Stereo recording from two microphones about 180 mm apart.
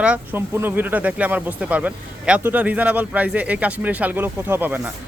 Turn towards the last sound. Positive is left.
turn(degrees=-10)  # may be behind; listen again after turning